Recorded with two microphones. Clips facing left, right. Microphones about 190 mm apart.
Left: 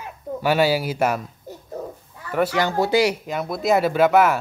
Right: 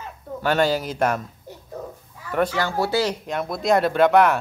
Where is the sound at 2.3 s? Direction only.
5° left (ahead or behind).